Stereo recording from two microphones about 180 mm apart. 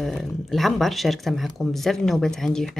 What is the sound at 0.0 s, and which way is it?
Speech, centre (ahead or behind).